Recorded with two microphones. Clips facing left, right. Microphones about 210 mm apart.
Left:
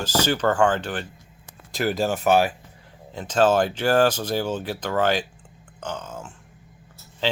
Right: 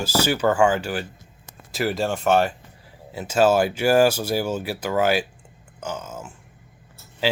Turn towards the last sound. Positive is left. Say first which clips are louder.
# right 2 dB
turn(degrees=-10)  # may be behind; listen again after turning